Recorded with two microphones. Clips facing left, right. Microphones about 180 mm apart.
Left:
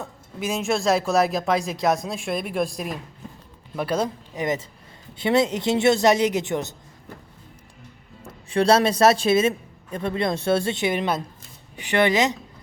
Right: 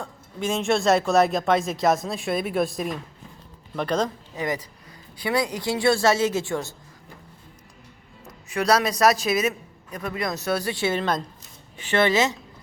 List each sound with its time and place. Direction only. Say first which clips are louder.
0.0 s speech: right 1 dB; 5° left (ahead or behind)
5.1 s a man's voice: left 5 dB; 25° left (ahead or behind)
8.3 s a man's voice: left 3 dB; 30° left (ahead or behind)